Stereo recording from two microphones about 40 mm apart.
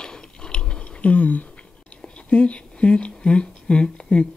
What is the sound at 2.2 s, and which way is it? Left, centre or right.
Speech, left.